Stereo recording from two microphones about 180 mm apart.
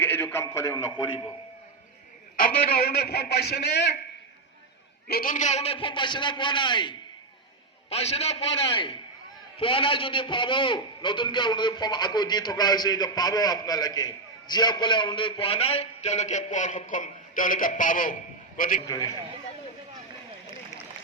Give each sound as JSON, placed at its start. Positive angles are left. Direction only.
{"t": 0.0, "sound": "a man's voice", "side_deg": 10}
{"t": 2.3, "sound": "a man's voice", "side_deg": 55}
{"t": 5.0, "sound": "a man's voice", "side_deg": 55}